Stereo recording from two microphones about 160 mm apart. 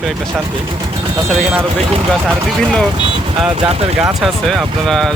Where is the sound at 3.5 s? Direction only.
35° right (ahead or behind).